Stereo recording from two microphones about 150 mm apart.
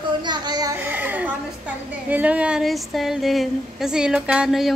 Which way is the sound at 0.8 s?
10° right (ahead or behind).